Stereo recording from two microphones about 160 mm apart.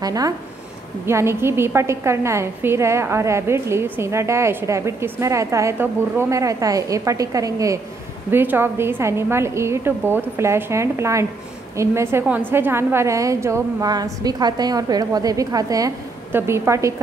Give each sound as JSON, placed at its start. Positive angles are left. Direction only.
{"t": 0.0, "sound": "a woman's voice", "side_deg": -25}